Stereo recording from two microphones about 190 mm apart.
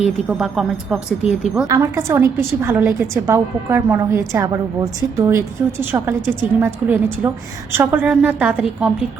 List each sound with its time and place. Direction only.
0.0 s a woman's voice: 5° right (ahead or behind)
1.6 s a woman's voice: 20° right (ahead or behind)
6.6 s a woman's voice: 10° right (ahead or behind)